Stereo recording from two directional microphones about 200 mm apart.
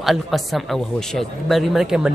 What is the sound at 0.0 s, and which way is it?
Speech, centre (ahead or behind).